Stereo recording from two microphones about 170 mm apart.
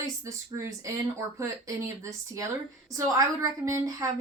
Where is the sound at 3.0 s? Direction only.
20° right (ahead or behind).